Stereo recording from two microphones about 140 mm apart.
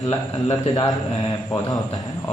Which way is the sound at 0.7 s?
30° left (ahead or behind).